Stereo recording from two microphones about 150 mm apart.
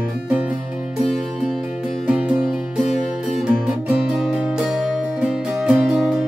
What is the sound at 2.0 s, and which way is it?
Music, 5° right (ahead or behind).